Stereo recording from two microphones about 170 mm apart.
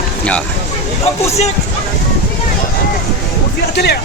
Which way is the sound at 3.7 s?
75° left (ahead or behind).